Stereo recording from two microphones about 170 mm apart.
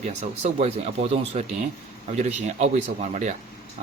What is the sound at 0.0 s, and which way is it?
A man's voice, 40° right (ahead or behind).